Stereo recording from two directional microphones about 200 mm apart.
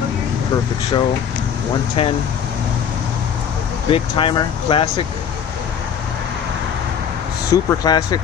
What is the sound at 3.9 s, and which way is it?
Speech, 25° left (ahead or behind).